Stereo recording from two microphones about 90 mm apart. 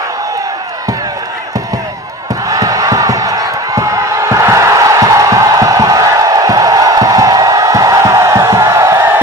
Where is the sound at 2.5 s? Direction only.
40° right (ahead or behind).